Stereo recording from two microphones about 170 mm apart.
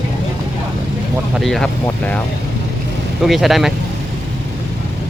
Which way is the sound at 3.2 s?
Centre (ahead or behind).